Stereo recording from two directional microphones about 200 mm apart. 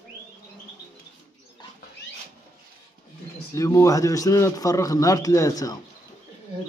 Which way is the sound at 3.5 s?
15° left (ahead or behind).